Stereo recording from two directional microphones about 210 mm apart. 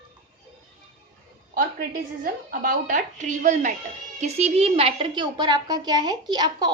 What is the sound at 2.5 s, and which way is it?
A woman's voice, 40° right (ahead or behind).